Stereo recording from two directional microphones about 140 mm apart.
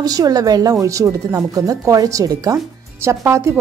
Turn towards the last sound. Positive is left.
turn(degrees=-20)  # may be behind; listen again after turning